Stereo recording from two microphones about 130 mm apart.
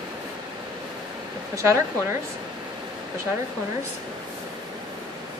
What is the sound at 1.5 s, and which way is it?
Speech, 20° right (ahead or behind).